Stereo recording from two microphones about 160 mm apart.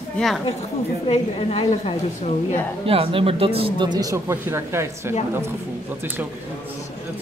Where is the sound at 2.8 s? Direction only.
35° right (ahead or behind); by 5.1 s 15° right (ahead or behind).